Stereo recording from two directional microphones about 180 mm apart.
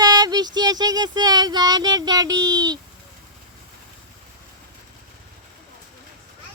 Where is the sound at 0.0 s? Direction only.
20° right (ahead or behind).